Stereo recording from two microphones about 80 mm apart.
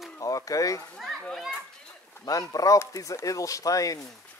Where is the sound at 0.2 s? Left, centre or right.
Left.